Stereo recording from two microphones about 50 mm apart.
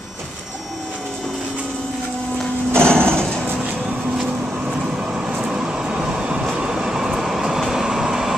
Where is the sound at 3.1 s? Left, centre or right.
Centre.